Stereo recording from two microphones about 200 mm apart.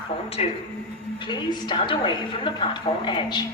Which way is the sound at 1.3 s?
20° left (ahead or behind).